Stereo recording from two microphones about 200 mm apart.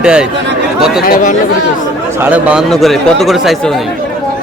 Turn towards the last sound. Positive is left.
turn(degrees=0)  # may be behind; listen again after turning